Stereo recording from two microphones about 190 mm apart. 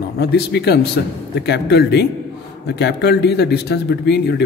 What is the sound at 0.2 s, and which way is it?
Speech, 60° left (ahead or behind).